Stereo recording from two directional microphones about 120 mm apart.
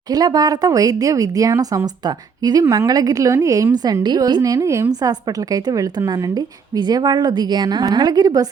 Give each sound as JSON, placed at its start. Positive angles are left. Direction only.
{"t": 0.1, "sound": "a woman's voice", "side_deg": -35}